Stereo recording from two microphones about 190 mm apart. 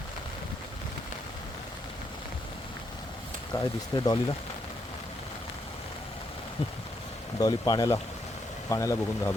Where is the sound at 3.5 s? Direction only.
15° left (ahead or behind).